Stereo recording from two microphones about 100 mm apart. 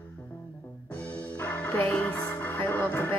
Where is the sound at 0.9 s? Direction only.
15° left (ahead or behind).